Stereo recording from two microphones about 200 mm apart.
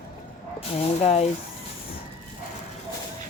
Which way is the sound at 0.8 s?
30° left (ahead or behind).